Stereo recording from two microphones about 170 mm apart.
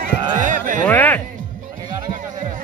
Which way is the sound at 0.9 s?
10° left (ahead or behind).